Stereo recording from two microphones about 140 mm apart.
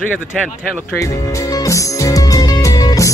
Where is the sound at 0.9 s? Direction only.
25° left (ahead or behind).